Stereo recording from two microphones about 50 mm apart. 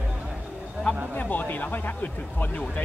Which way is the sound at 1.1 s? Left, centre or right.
Left.